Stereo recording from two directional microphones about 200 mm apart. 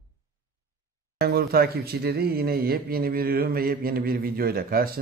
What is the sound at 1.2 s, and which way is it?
Speech, 50° right (ahead or behind).